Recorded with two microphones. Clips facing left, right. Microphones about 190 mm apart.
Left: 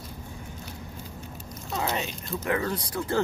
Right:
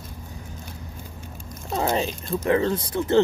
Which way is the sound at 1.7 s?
40° right (ahead or behind).